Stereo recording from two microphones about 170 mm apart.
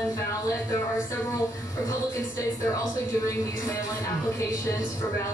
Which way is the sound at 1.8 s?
20° left (ahead or behind).